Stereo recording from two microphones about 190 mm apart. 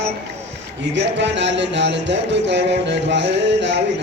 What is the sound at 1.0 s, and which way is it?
Music, 70° right (ahead or behind).